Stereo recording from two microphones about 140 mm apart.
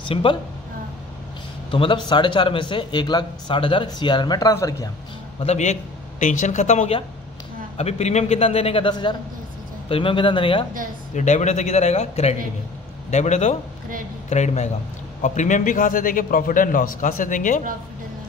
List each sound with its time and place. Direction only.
0.1 s speech: 40° left (ahead or behind)
1.7 s speech: 35° left (ahead or behind)
5.4 s speech: 50° left (ahead or behind); by 10.6 s 35° left (ahead or behind)
11.1 s a man's voice: 55° left (ahead or behind)